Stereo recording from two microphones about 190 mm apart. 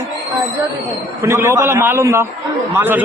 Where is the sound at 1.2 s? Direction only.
15° right (ahead or behind).